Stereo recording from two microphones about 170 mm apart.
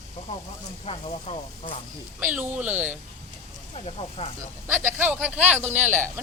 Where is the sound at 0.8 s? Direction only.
35° left (ahead or behind).